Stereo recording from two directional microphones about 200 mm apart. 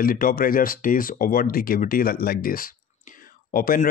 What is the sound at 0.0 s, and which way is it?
Speech, 45° left (ahead or behind).